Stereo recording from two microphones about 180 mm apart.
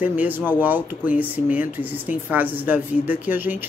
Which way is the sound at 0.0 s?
10° right (ahead or behind).